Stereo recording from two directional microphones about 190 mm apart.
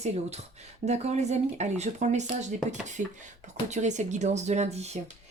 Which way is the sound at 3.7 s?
40° right (ahead or behind).